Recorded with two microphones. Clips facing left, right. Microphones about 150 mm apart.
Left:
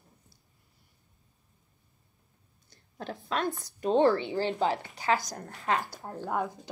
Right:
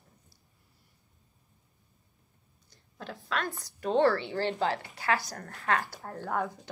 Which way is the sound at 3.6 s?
20° left (ahead or behind).